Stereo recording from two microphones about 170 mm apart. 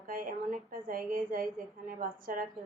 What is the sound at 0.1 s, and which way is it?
A woman's voice, 55° right (ahead or behind).